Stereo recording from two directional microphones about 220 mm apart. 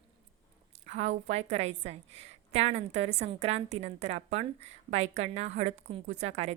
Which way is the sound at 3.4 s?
30° right (ahead or behind).